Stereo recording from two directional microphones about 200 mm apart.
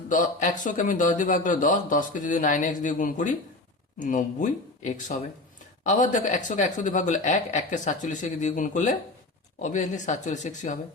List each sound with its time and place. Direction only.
0.1 s speech: 40° left (ahead or behind)